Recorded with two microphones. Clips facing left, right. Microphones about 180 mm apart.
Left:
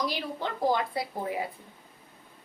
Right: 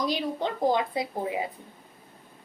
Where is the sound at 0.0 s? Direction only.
20° right (ahead or behind).